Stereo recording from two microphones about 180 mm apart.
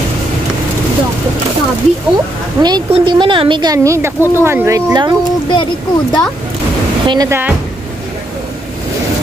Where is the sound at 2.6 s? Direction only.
25° right (ahead or behind).